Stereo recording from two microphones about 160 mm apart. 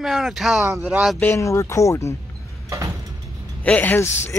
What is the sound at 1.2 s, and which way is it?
Speech, 15° left (ahead or behind).